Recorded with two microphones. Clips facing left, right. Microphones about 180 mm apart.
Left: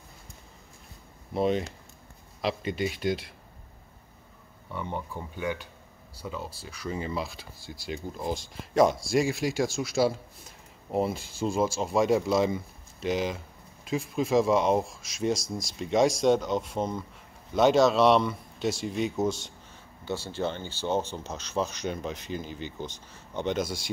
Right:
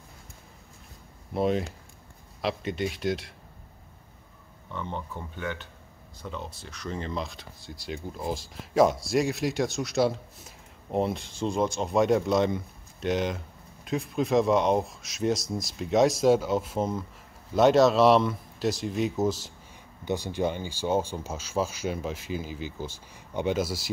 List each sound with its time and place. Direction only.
1.3 s speech: centre (ahead or behind)
4.6 s speech: 10° left (ahead or behind)
20.1 s speech: 15° right (ahead or behind)